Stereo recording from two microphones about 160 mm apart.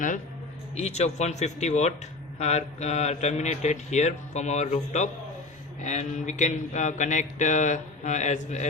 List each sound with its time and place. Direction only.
0.8 s speech: 45° left (ahead or behind)